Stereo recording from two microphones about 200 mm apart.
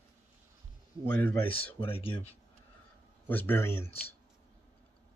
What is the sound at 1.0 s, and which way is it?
Speech, 10° left (ahead or behind).